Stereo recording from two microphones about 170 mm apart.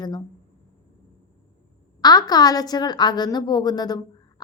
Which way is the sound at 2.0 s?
25° left (ahead or behind).